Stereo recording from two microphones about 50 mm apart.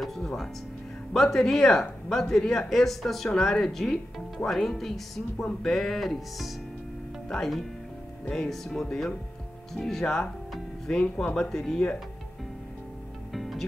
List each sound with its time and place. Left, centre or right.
0.0 s speech: centre
13.3 s music: centre